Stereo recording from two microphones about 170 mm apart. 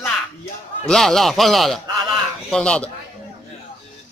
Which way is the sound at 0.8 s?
Centre (ahead or behind).